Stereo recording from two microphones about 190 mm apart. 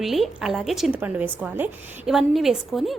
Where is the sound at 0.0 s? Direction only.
Centre (ahead or behind).